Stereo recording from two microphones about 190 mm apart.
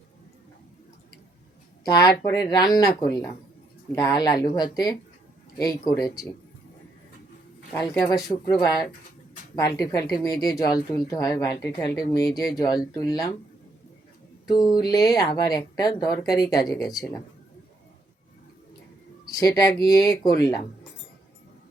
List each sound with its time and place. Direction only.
1.8 s speech: 20° left (ahead or behind)
7.8 s speech: 20° left (ahead or behind)
12.3 s speech: centre (ahead or behind)
12.5 s speech: 20° left (ahead or behind)
14.4 s speech: 20° left (ahead or behind)
19.5 s speech: 20° left (ahead or behind)